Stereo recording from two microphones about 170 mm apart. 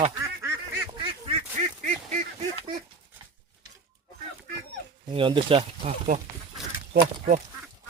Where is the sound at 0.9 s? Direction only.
30° right (ahead or behind).